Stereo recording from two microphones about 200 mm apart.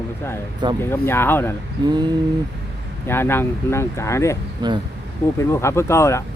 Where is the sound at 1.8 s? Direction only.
20° right (ahead or behind).